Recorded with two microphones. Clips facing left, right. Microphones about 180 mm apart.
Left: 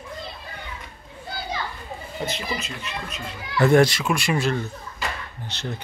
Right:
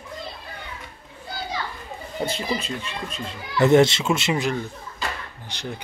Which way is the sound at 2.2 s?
30° right (ahead or behind).